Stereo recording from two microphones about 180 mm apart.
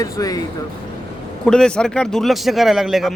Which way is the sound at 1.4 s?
5° left (ahead or behind).